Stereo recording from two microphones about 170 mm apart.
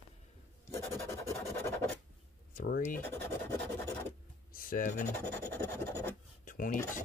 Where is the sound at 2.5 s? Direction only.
55° left (ahead or behind).